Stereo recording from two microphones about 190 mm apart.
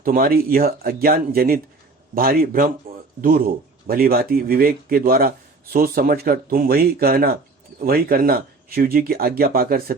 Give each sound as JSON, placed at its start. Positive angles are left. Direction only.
{"t": 0.0, "sound": "speech", "side_deg": -50}